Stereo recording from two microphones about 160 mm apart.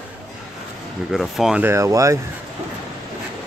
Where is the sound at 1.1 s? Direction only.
Centre (ahead or behind).